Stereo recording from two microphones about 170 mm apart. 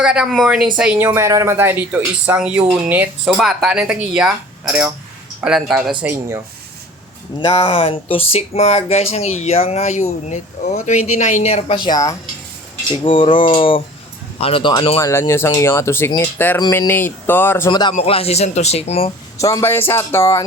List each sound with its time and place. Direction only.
0.0 s speech: 5° right (ahead or behind)
5.4 s speech: centre (ahead or behind)
6.0 s speech: 15° right (ahead or behind)
7.3 s speech: 30° left (ahead or behind)
14.9 s speech: 15° left (ahead or behind)
17.7 s a man's voice: 25° left (ahead or behind)
19.4 s speech: 20° left (ahead or behind)